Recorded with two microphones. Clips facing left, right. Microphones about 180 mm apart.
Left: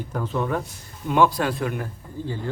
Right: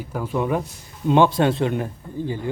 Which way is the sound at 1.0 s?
25° right (ahead or behind).